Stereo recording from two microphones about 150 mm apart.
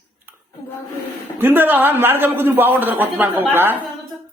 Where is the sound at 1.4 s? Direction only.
15° right (ahead or behind).